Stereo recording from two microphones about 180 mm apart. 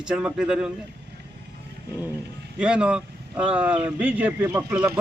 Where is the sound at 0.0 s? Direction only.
5° right (ahead or behind).